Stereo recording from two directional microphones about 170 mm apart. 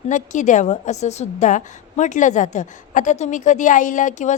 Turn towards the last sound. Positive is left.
turn(degrees=45)  # may be behind; listen again after turning